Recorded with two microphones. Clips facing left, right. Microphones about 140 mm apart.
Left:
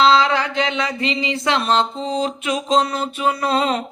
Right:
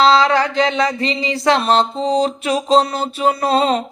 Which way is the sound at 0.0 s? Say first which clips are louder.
Right 2 dB; 40° right (ahead or behind).